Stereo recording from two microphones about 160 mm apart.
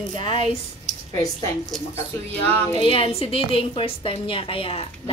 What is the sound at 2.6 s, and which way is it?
A woman's voice, 30° left (ahead or behind).